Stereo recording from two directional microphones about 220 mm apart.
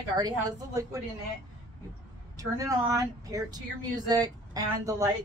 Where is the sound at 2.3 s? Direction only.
15° right (ahead or behind).